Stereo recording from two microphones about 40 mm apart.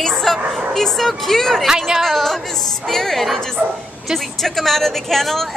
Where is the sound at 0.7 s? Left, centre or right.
Centre.